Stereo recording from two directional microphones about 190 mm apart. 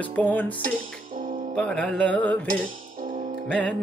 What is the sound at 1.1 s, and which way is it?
Music, 45° right (ahead or behind).